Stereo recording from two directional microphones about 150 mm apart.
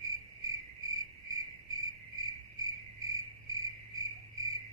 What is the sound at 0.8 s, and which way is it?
Cricket, 25° right (ahead or behind).